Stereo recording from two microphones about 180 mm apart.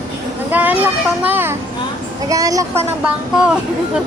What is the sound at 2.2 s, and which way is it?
Speech, 20° right (ahead or behind).